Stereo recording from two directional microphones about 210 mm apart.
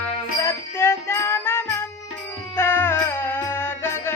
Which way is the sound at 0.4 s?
10° left (ahead or behind).